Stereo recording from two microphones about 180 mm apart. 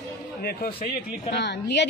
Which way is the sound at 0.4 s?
60° left (ahead or behind).